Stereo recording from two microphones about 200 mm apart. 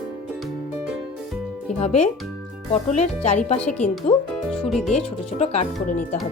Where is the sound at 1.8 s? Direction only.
30° left (ahead or behind).